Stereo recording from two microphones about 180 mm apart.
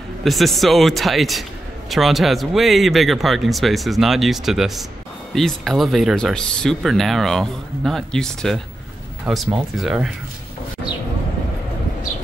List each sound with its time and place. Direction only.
0.2 s speech: centre (ahead or behind)